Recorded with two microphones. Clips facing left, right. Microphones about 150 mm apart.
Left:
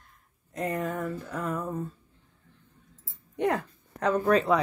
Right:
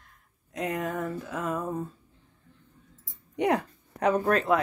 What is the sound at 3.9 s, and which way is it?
Speech, 10° right (ahead or behind).